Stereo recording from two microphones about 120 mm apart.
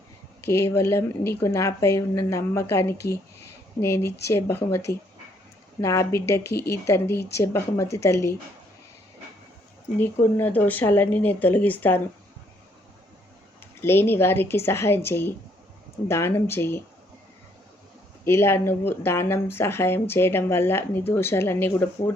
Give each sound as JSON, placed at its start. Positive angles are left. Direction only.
{"t": 0.4, "sound": "speech", "side_deg": 20}
{"t": 10.3, "sound": "speech", "side_deg": 15}
{"t": 13.8, "sound": "speech", "side_deg": 20}
{"t": 18.3, "sound": "speech", "side_deg": 20}